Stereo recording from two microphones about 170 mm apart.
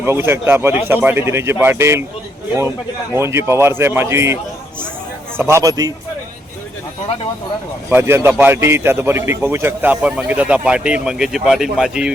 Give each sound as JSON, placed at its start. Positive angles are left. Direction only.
{"t": 0.0, "sound": "a man's voice", "side_deg": -15}
{"t": 3.2, "sound": "a man's voice", "side_deg": -15}
{"t": 5.4, "sound": "a man's voice", "side_deg": -15}
{"t": 7.9, "sound": "a man's voice", "side_deg": -15}